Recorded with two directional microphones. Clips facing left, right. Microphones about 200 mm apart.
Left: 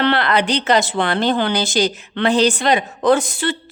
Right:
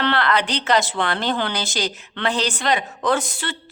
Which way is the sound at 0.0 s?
15° left (ahead or behind).